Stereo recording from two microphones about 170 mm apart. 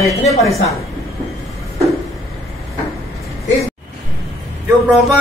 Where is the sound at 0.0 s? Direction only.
20° left (ahead or behind).